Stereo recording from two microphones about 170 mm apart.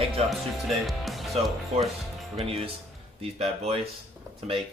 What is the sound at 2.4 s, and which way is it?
Speech, 35° right (ahead or behind).